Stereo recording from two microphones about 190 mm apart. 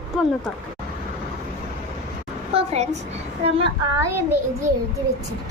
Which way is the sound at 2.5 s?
35° right (ahead or behind).